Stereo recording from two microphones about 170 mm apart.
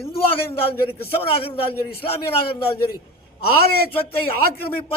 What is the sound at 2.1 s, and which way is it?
Speech, 30° left (ahead or behind).